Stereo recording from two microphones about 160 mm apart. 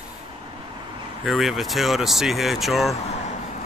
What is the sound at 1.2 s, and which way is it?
Speech, centre (ahead or behind).